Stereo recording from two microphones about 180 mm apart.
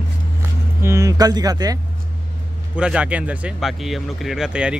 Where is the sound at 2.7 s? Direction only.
5° right (ahead or behind).